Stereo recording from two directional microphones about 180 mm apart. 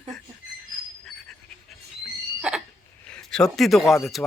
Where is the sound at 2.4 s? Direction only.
5° right (ahead or behind).